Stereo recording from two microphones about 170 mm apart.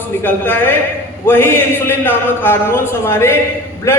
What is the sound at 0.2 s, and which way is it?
A man's voice, 10° left (ahead or behind).